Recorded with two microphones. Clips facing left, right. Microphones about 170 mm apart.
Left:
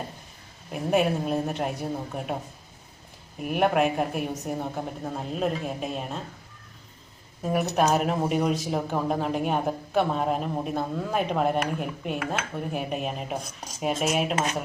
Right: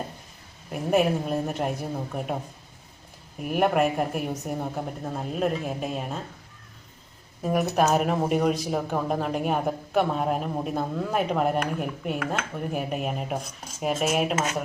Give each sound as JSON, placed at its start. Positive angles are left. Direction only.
{"t": 0.7, "sound": "speech", "side_deg": 0}
{"t": 3.4, "sound": "speech", "side_deg": 0}
{"t": 7.4, "sound": "speech", "side_deg": 0}